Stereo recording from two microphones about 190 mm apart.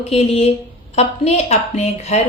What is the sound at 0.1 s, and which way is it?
A woman's voice, 30° left (ahead or behind).